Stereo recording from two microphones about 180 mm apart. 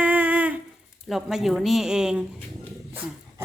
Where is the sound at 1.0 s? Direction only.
Centre (ahead or behind).